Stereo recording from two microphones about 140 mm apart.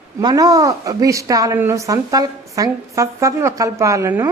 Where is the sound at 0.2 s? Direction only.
25° right (ahead or behind).